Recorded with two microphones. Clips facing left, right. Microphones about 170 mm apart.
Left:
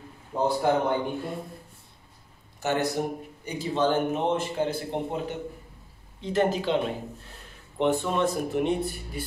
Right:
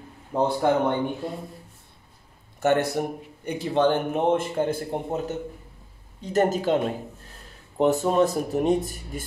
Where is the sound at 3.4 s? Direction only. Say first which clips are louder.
Right 3 dB; 60° right (ahead or behind); by 9.2 s 40° right (ahead or behind).